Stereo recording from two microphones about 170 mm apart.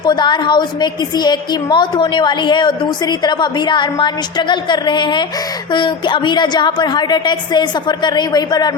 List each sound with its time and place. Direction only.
0.0 s a woman's voice: 25° left (ahead or behind)